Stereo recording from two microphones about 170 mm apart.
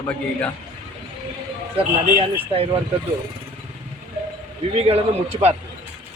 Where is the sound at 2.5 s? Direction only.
35° right (ahead or behind).